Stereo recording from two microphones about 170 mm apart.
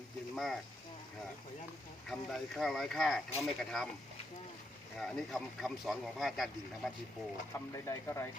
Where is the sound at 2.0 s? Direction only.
Centre (ahead or behind).